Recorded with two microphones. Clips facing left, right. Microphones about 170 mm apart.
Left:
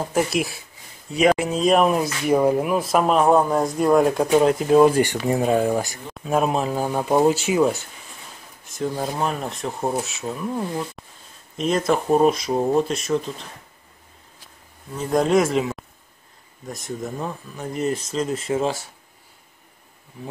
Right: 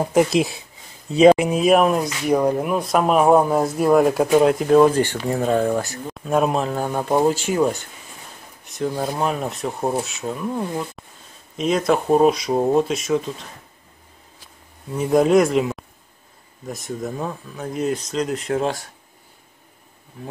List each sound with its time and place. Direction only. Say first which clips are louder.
0.0 s speech: right 5 dB; 15° right (ahead or behind)
1.5 s speech: right 2 dB; 5° right (ahead or behind)
4.7 s speech: even; 10° left (ahead or behind)
15.0 s speech: right 3 dB; 5° right (ahead or behind)